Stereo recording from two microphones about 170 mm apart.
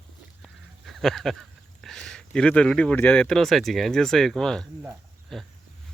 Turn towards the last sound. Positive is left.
turn(degrees=0)  # may be behind; listen again after turning